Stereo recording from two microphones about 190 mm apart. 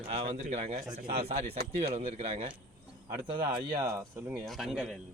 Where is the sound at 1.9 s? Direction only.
30° right (ahead or behind); by 4.4 s 15° right (ahead or behind).